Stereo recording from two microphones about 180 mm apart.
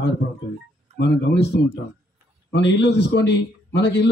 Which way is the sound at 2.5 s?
75° left (ahead or behind).